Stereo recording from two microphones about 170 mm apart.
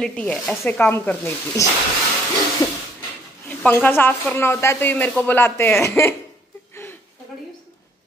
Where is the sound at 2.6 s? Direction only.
20° left (ahead or behind).